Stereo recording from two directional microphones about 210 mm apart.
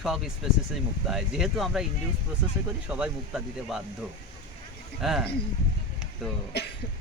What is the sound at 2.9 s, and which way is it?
Speech, 5° right (ahead or behind).